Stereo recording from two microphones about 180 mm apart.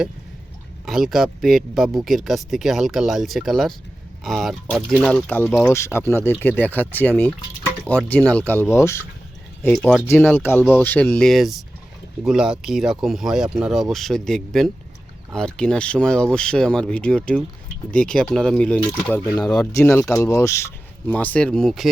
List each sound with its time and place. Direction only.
0.9 s speech: centre (ahead or behind)
19.2 s speech: 15° left (ahead or behind)
19.5 s speech: 5° left (ahead or behind)